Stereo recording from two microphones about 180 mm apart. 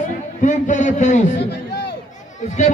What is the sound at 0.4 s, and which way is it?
Speech, 45° left (ahead or behind).